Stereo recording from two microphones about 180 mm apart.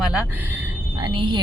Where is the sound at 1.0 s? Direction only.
25° right (ahead or behind).